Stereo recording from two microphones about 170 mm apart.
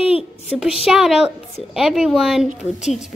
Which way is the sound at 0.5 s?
Centre (ahead or behind).